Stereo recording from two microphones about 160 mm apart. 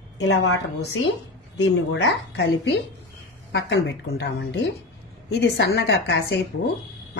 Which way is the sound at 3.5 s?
90° left.